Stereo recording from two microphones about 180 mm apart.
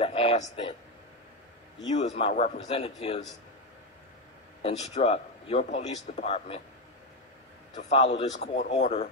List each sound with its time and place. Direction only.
0.0 s a sound: 30° left (ahead or behind)
1.9 s a man's voice: 40° left (ahead or behind)
4.6 s a man's voice: 35° left (ahead or behind)
7.7 s a man's voice: 35° left (ahead or behind)